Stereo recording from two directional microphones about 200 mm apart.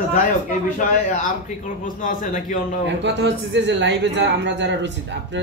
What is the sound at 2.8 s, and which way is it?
A man's voice, 60° right (ahead or behind).